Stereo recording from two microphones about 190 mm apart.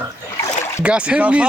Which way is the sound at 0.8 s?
5° right (ahead or behind).